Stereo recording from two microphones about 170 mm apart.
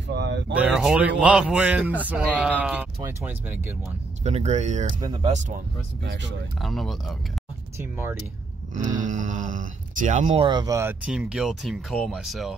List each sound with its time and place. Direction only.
0.1 s a sound: 85° right
0.6 s speech: 5° right (ahead or behind)
4.2 s speech: 40° right (ahead or behind)
5.0 s speech: 30° right (ahead or behind)
6.0 s speech: 90° right
6.6 s speech: centre (ahead or behind)
7.7 s speech: 15° right (ahead or behind)
8.7 s speech: 45° right (ahead or behind)
10.4 s speech: 25° right (ahead or behind)
11.1 s speech: 5° right (ahead or behind)